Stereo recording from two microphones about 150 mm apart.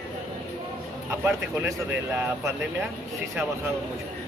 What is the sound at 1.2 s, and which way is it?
Speech, 15° right (ahead or behind).